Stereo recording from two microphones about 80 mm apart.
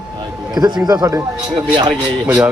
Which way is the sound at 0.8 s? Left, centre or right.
Right.